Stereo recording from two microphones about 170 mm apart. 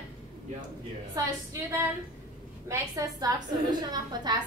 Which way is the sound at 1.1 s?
15° right (ahead or behind).